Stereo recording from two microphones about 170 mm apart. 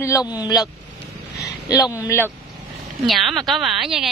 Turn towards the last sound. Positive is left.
turn(degrees=-5)  # may be behind; listen again after turning